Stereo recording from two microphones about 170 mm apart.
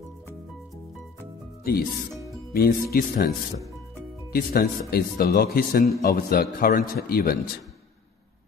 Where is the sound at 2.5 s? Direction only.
60° left (ahead or behind).